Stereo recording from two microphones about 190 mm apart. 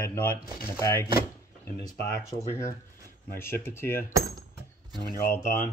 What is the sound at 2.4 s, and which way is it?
Speech, 15° left (ahead or behind).